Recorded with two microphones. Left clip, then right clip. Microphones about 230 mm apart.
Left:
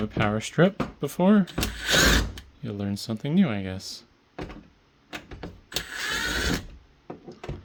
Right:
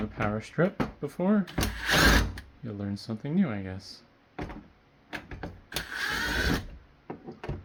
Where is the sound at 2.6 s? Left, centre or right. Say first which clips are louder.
Left 5 dB; left.